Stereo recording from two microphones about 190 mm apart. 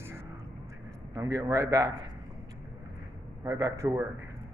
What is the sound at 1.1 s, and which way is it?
Speech, 15° right (ahead or behind).